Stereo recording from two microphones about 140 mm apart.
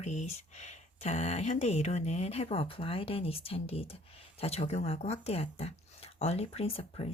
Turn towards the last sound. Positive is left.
turn(degrees=45)  # may be behind; listen again after turning